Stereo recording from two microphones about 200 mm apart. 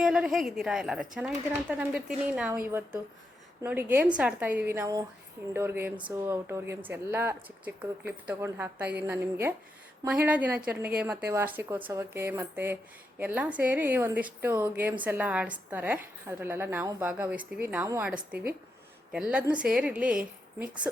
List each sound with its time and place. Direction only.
0.0 s a woman's voice: 5° right (ahead or behind)